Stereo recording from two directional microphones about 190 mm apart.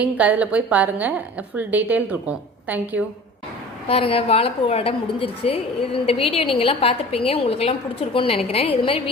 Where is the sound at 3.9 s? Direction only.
30° left (ahead or behind).